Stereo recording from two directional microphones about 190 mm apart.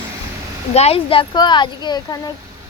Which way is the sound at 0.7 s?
30° left (ahead or behind).